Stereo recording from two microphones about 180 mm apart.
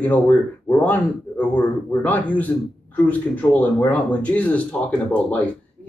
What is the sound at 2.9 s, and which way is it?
Speech, 10° left (ahead or behind).